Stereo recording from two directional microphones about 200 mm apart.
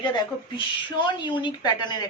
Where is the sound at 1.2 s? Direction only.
25° left (ahead or behind).